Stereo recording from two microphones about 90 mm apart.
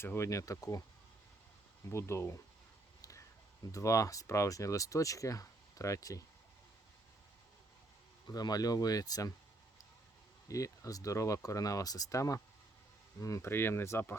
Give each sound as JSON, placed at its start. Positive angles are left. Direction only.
{"t": 0.0, "sound": "speech", "side_deg": 30}
{"t": 1.9, "sound": "speech", "side_deg": 30}
{"t": 3.0, "sound": "a sound", "side_deg": 35}
{"t": 3.7, "sound": "speech", "side_deg": 35}
{"t": 8.3, "sound": "speech", "side_deg": 45}
{"t": 10.5, "sound": "speech", "side_deg": 40}